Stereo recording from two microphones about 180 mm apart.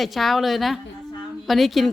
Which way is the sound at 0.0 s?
Centre (ahead or behind).